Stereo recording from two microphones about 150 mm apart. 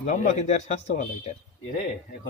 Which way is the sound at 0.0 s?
50° left (ahead or behind).